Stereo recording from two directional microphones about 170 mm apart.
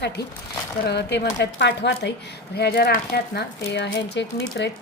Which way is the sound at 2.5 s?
70° left (ahead or behind).